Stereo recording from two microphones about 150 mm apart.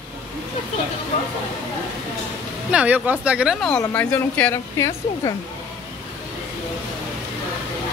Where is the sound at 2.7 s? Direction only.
10° right (ahead or behind).